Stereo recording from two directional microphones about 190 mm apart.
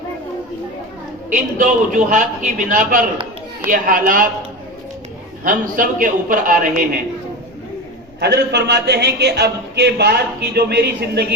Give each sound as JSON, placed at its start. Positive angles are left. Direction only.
{"t": 1.3, "sound": "a man's voice", "side_deg": -40}
{"t": 5.4, "sound": "a man's voice", "side_deg": -45}
{"t": 8.2, "sound": "a man's voice", "side_deg": -60}